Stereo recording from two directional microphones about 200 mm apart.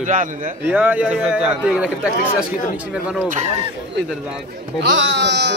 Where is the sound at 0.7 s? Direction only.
5° right (ahead or behind).